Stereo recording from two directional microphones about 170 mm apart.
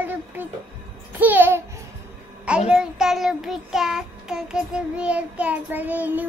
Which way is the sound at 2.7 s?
5° right (ahead or behind).